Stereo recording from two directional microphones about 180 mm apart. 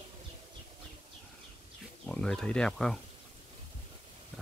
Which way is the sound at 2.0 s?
5° left (ahead or behind).